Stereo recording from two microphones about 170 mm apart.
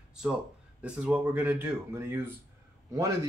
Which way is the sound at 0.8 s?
5° right (ahead or behind).